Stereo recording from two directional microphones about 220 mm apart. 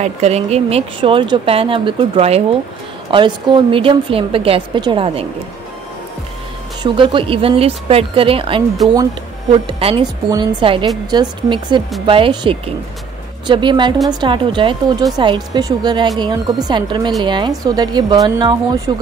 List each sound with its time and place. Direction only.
0.0 s a woman's voice: 30° right (ahead or behind)
6.8 s a woman's voice: 20° right (ahead or behind)